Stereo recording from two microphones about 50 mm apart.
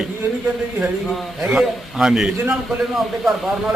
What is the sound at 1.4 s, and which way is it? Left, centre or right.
Speech, centre.